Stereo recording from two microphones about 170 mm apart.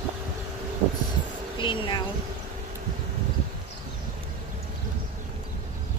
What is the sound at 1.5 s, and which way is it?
Speech, 30° left (ahead or behind).